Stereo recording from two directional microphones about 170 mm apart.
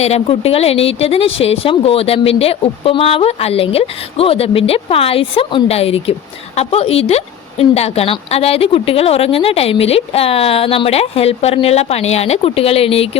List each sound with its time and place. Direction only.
0.0 s speech: 35° left (ahead or behind)